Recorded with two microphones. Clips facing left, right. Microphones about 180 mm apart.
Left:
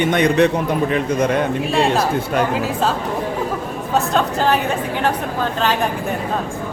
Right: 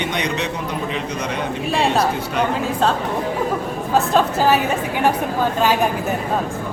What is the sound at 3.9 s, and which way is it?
Speech, centre (ahead or behind).